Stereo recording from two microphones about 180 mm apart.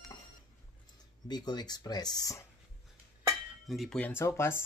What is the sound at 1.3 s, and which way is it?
Speech, 25° left (ahead or behind).